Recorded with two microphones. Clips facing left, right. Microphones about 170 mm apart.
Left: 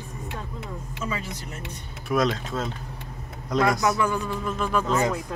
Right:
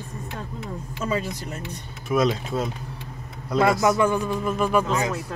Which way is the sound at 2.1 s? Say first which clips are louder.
Right 2 dB; 5° right (ahead or behind).